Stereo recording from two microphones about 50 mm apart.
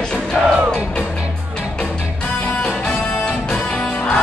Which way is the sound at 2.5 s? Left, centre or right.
Centre.